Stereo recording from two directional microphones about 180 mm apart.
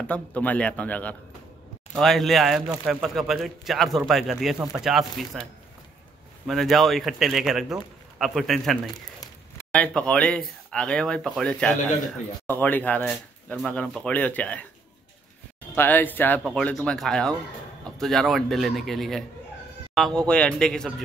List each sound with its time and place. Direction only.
0.0 s a man's voice: 5° left (ahead or behind)
6.4 s speech: centre (ahead or behind)
8.9 s a sound: 20° left (ahead or behind)
9.7 s a man's voice: 5° left (ahead or behind)
15.7 s speech: 10° left (ahead or behind)